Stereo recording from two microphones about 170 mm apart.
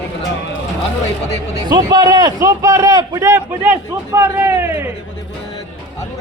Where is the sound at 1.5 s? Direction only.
20° right (ahead or behind).